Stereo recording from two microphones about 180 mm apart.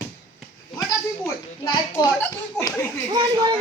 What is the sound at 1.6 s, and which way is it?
Speech, 25° left (ahead or behind).